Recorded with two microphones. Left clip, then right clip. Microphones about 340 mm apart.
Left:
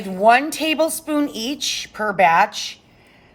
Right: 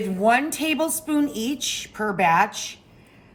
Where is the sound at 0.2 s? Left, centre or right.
Left.